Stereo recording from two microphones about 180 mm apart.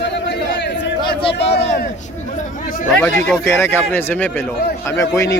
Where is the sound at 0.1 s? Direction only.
75° left (ahead or behind).